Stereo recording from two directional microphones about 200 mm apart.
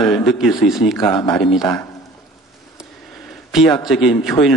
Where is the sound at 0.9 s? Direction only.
20° left (ahead or behind).